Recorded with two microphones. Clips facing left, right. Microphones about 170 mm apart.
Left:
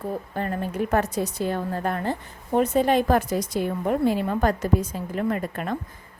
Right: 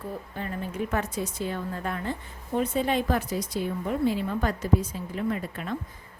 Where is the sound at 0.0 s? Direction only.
50° left (ahead or behind).